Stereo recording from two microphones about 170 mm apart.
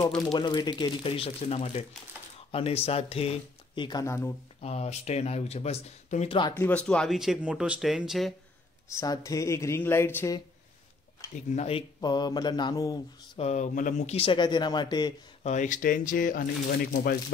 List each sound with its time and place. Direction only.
0.3 s speech: 25° left (ahead or behind)
4.6 s speech: 40° left (ahead or behind)
6.5 s speech: 10° left (ahead or behind)
8.9 s speech: 20° left (ahead or behind)
11.5 s speech: 40° left (ahead or behind)
12.0 s speech: 25° left (ahead or behind)
13.4 s speech: 45° left (ahead or behind); by 15.1 s 25° left (ahead or behind)
15.4 s speech: 45° left (ahead or behind)